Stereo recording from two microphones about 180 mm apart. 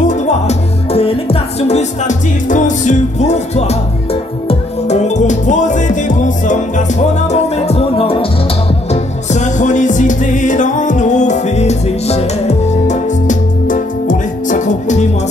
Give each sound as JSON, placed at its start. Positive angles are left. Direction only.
{"t": 0.0, "sound": "music", "side_deg": 40}